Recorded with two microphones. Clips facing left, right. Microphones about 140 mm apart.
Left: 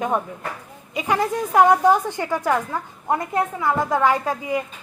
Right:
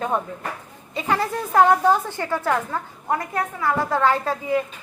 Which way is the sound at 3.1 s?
25° left (ahead or behind).